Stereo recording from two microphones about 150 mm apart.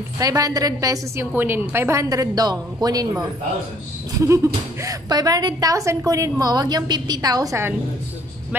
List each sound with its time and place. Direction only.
0.2 s a woman's voice: 25° right (ahead or behind)
4.8 s a woman's voice: 25° right (ahead or behind)